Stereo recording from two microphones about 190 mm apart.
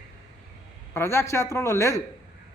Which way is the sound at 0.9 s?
15° left (ahead or behind).